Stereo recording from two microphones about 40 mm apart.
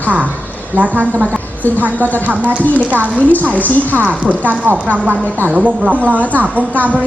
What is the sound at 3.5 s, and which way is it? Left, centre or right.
Speech, left.